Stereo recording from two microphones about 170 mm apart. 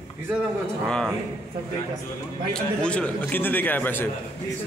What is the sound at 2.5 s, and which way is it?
A man's voice, 5° left (ahead or behind).